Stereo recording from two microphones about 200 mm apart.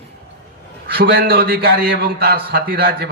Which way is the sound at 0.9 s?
50° right (ahead or behind).